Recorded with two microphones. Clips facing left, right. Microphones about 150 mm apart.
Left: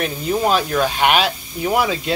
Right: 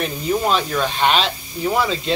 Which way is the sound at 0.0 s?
Centre (ahead or behind).